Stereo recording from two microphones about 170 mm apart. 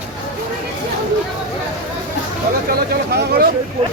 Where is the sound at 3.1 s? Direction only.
70° right (ahead or behind).